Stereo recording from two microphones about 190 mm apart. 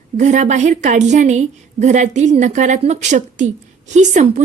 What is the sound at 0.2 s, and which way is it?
A woman's voice, 40° right (ahead or behind).